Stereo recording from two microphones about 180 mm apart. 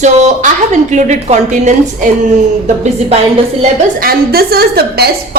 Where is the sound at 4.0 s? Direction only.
60° right (ahead or behind).